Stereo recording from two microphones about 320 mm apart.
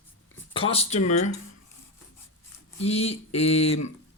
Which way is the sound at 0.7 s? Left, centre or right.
Centre.